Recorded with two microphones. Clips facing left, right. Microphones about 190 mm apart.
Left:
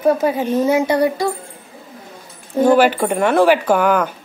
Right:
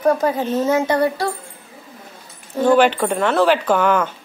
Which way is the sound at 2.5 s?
10° left (ahead or behind).